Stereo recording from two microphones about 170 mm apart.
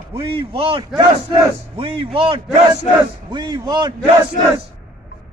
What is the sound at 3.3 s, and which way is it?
Battle cry, 25° right (ahead or behind).